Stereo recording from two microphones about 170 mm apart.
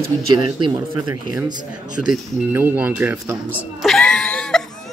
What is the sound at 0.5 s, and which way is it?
Speech, 25° right (ahead or behind).